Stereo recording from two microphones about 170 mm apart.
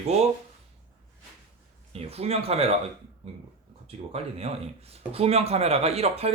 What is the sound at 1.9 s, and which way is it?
Speech, 35° right (ahead or behind).